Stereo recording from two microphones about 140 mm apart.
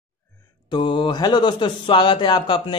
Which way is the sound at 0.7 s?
35° left (ahead or behind).